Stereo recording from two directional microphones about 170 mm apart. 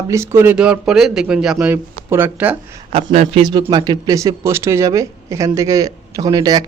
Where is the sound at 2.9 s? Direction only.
40° right (ahead or behind).